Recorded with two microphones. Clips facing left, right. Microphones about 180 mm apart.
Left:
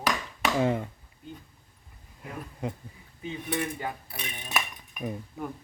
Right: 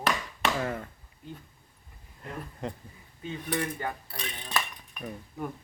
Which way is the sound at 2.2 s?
5° left (ahead or behind).